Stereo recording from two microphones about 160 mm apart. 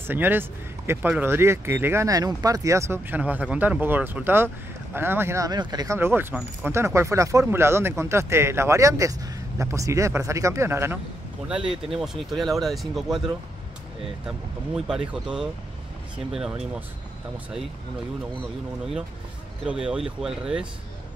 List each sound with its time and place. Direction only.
0.0 s speech: 10° right (ahead or behind)
5.9 s speech: 15° right (ahead or behind)
11.4 s speech: 5° right (ahead or behind)
14.9 s speech: 5° right (ahead or behind)
19.6 s speech: 5° right (ahead or behind)